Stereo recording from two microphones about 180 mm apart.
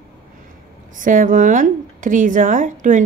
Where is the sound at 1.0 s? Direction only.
45° right (ahead or behind).